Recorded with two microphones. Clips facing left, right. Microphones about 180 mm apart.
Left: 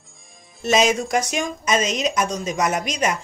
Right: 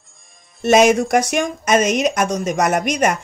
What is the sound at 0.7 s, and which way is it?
Speech, 60° right (ahead or behind).